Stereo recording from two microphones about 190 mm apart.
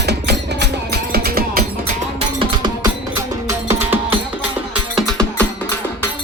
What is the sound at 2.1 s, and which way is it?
Music, 25° right (ahead or behind).